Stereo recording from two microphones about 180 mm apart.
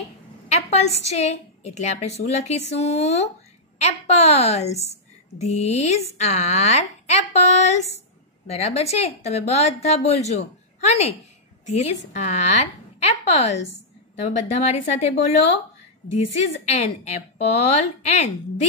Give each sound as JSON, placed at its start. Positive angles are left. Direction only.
{"t": 0.5, "sound": "a woman's voice", "side_deg": 35}
{"t": 16.6, "sound": "a woman's voice", "side_deg": 35}